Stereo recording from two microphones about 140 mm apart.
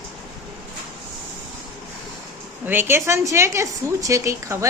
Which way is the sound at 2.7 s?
15° right (ahead or behind).